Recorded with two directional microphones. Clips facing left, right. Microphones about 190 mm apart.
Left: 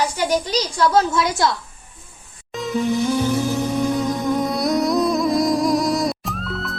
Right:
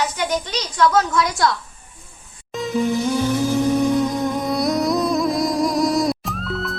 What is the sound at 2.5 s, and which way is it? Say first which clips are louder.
Music: even; centre (ahead or behind).